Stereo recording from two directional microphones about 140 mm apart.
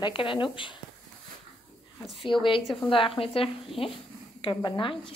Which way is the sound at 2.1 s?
35° left (ahead or behind).